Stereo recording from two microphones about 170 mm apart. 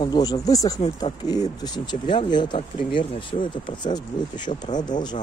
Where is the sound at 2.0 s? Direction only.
25° left (ahead or behind).